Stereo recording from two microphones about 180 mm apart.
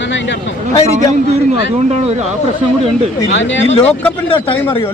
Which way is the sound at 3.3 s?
90° left.